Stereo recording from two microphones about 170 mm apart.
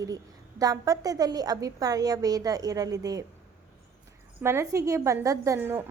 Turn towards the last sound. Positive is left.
turn(degrees=-15)  # may be behind; listen again after turning